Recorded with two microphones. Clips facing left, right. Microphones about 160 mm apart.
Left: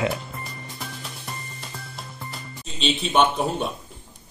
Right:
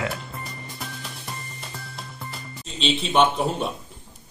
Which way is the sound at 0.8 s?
Centre (ahead or behind).